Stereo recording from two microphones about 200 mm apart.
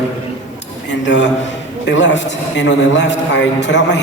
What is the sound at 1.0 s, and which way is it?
A man's voice, 60° left (ahead or behind).